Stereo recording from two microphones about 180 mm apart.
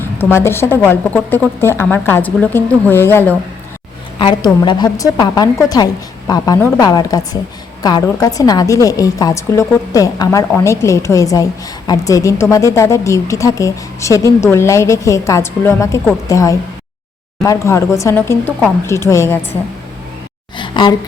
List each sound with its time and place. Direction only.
0.0 s speech: 10° left (ahead or behind)
4.2 s a woman's voice: 25° left (ahead or behind)
20.6 s speech: 25° left (ahead or behind)